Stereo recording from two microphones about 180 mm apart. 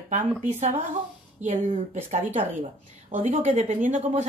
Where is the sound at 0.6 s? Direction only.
40° right (ahead or behind).